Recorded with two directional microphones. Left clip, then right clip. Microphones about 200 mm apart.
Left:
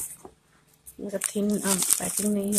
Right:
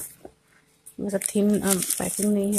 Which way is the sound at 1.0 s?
25° right (ahead or behind).